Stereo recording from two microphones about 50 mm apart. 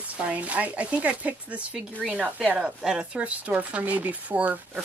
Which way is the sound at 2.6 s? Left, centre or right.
Centre.